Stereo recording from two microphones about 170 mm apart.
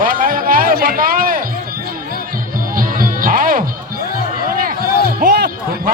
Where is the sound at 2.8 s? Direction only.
55° right (ahead or behind).